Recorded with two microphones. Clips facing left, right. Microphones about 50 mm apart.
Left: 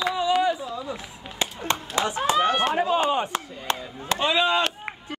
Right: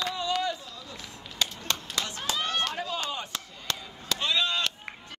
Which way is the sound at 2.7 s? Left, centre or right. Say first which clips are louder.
Left 11 dB; left.